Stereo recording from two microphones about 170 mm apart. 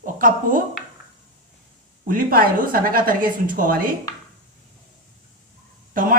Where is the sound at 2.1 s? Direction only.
55° right (ahead or behind).